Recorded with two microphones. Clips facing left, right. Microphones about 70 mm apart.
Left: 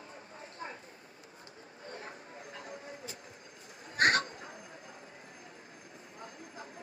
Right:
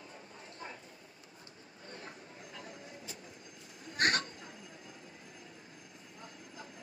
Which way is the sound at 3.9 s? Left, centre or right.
Left.